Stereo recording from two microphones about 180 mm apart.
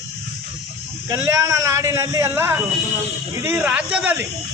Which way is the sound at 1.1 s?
20° right (ahead or behind).